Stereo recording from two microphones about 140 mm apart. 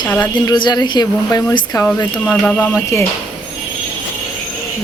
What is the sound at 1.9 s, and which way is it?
Speech, 10° left (ahead or behind).